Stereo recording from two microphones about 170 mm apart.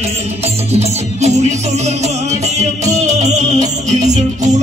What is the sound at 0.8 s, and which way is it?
Music, 40° right (ahead or behind).